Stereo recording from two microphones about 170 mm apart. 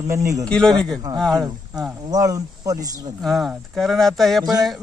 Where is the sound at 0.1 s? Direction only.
20° right (ahead or behind).